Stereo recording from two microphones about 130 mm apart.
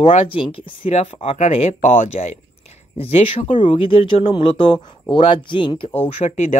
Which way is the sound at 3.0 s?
45° left (ahead or behind).